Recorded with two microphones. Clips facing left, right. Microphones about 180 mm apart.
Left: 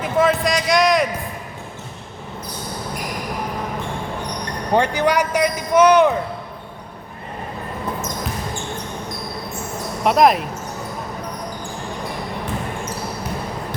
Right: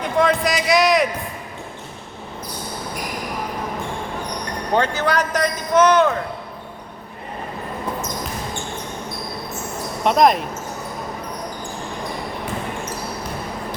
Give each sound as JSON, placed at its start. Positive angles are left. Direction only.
{"t": 0.0, "sound": "a sound", "side_deg": 5}
{"t": 4.8, "sound": "a man's voice", "side_deg": 15}
{"t": 10.0, "sound": "speech", "side_deg": 0}